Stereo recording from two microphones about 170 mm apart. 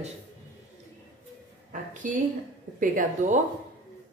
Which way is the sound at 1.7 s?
50° right (ahead or behind).